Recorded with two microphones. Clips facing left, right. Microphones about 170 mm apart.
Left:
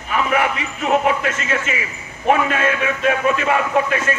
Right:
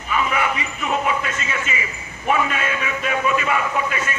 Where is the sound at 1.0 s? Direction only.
70° left (ahead or behind).